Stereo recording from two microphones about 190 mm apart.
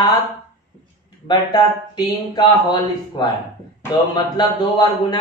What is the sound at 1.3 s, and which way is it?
Speech, 20° left (ahead or behind).